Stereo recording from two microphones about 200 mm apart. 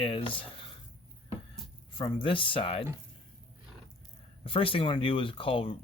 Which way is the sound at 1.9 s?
25° left (ahead or behind).